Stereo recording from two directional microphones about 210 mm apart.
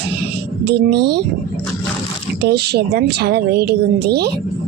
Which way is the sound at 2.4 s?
50° right (ahead or behind).